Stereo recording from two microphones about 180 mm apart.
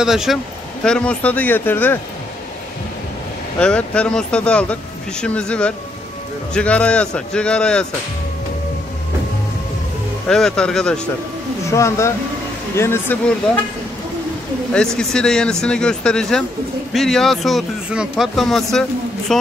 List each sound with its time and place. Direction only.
0.0 s speech: centre (ahead or behind)
3.5 s speech: 5° left (ahead or behind)
10.2 s speech: 5° left (ahead or behind)
11.7 s speech: 15° left (ahead or behind)
14.7 s speech: 5° left (ahead or behind)